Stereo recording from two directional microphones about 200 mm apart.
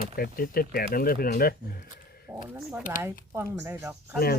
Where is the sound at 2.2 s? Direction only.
5° right (ahead or behind).